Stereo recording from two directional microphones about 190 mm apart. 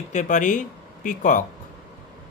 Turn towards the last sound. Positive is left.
turn(degrees=45)  # may be behind; listen again after turning